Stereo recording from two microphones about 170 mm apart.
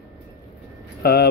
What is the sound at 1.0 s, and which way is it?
Speech, 65° left (ahead or behind).